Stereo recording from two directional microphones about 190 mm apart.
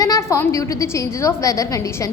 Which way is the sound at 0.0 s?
15° left (ahead or behind).